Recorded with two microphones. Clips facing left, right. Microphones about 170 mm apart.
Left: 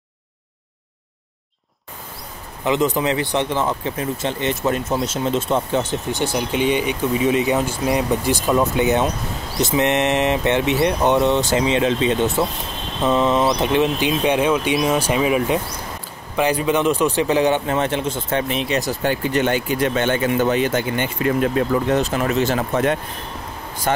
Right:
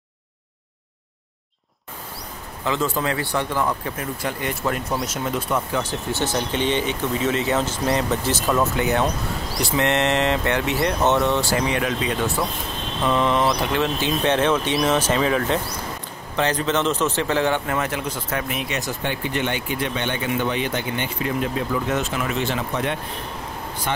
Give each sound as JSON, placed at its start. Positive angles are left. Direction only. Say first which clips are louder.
{"t": 2.6, "sound": "speech", "louder": "left 5 dB", "side_deg": 20}
{"t": 21.8, "sound": "speech", "louder": "left 5 dB", "side_deg": 35}